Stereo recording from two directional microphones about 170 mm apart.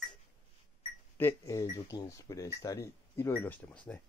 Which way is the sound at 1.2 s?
15° left (ahead or behind).